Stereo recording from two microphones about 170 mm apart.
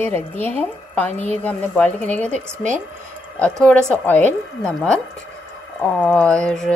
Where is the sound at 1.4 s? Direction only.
10° left (ahead or behind).